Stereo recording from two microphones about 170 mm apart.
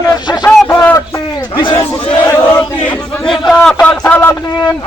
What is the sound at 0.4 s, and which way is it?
Crowd, 15° left (ahead or behind).